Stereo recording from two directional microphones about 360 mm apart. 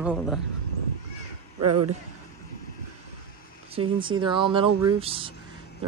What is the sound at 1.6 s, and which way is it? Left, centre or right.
Speech, right.